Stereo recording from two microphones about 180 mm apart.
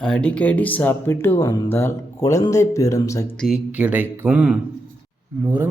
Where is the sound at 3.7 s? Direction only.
10° right (ahead or behind).